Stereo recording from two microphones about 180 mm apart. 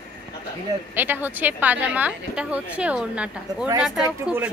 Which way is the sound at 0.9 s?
10° right (ahead or behind).